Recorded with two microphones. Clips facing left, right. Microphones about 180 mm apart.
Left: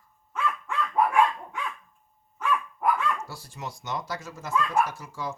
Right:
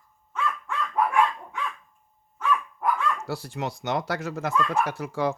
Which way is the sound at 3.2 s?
65° right (ahead or behind).